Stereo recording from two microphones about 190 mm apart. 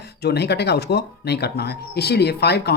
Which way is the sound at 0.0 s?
60° left (ahead or behind).